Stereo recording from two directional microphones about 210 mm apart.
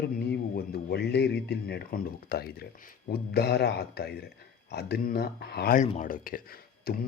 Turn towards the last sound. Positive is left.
turn(degrees=45)  # may be behind; listen again after turning